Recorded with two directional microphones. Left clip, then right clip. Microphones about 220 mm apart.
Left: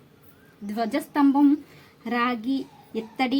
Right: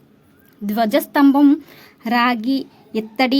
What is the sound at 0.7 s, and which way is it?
Speech, 45° right (ahead or behind).